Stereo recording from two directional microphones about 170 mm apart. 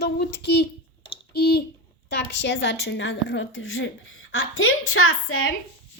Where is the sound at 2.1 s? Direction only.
90° left.